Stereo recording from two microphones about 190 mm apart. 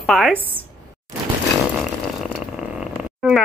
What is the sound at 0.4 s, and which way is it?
Speech, 10° right (ahead or behind).